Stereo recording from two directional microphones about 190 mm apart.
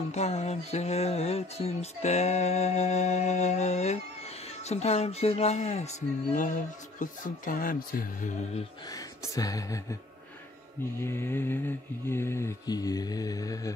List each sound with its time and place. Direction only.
0.1 s music: 35° left (ahead or behind)
8.8 s speech: 20° left (ahead or behind)
11.0 s speech: 15° left (ahead or behind)